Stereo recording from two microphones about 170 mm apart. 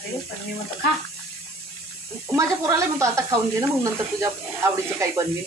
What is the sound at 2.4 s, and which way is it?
Speech, 15° right (ahead or behind).